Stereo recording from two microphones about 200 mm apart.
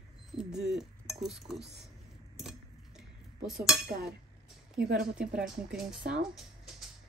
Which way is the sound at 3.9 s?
50° right (ahead or behind).